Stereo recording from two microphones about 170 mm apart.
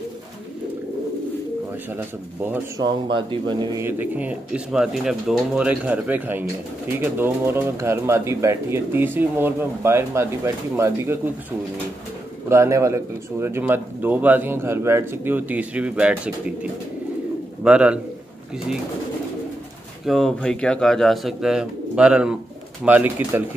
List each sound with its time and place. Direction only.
1.9 s speech: 10° right (ahead or behind)
2.8 s speech: 25° right (ahead or behind)
3.8 s speech: 10° right (ahead or behind)
12.4 s speech: 15° right (ahead or behind)
17.6 s speech: 5° right (ahead or behind)
20.1 s speech: centre (ahead or behind)